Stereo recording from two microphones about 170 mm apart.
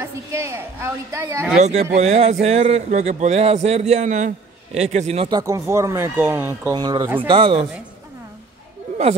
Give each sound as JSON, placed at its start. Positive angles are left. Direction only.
{"t": 0.0, "sound": "speech", "side_deg": -15}
{"t": 1.6, "sound": "speech", "side_deg": -40}
{"t": 5.3, "sound": "speech", "side_deg": -20}